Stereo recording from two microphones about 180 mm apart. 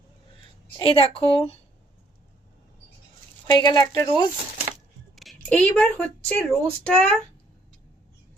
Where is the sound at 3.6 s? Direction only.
20° left (ahead or behind).